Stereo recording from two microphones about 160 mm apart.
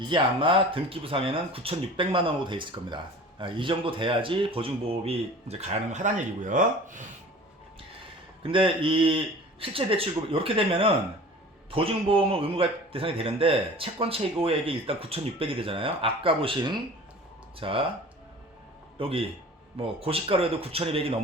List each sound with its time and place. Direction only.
0.1 s speech: 30° right (ahead or behind); by 7.0 s 55° right (ahead or behind)
8.4 s speech: 35° right (ahead or behind)
18.9 s speech: 35° right (ahead or behind)